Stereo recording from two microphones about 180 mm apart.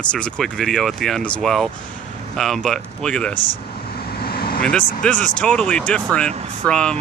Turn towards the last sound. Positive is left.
turn(degrees=5)  # may be behind; listen again after turning